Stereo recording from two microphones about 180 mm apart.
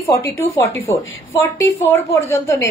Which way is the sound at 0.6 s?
15° left (ahead or behind).